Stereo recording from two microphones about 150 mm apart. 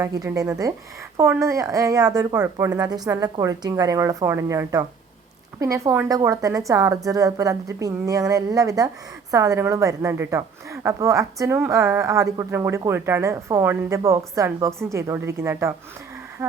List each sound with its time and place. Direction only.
0.0 s a woman's voice: 20° right (ahead or behind)